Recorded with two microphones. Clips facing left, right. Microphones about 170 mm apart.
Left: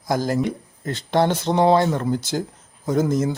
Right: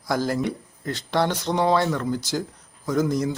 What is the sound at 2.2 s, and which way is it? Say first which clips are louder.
Speech: left 2 dB; 55° left (ahead or behind).